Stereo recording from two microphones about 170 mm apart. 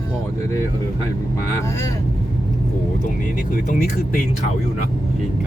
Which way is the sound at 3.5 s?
55° left (ahead or behind).